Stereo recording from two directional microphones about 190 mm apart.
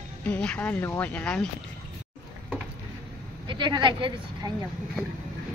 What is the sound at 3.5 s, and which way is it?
Speech, 25° right (ahead or behind).